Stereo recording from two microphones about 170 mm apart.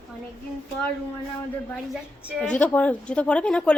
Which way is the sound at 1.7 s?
Centre (ahead or behind).